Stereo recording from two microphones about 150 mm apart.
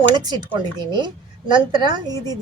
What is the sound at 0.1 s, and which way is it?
A woman's voice, 25° right (ahead or behind).